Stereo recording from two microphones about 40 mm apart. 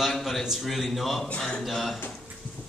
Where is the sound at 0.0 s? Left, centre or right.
Centre.